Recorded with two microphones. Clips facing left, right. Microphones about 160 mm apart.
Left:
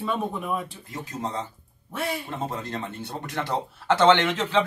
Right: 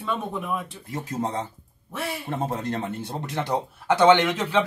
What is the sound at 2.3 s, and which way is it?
Speech, 60° right (ahead or behind).